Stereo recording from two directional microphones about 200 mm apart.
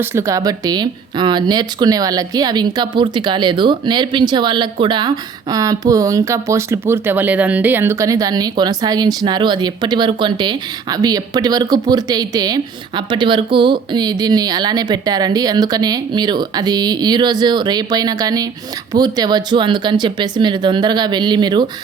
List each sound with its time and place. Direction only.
0.0 s speech: 15° right (ahead or behind)